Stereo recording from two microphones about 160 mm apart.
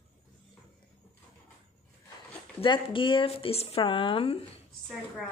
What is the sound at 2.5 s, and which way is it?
Speech, 30° left (ahead or behind).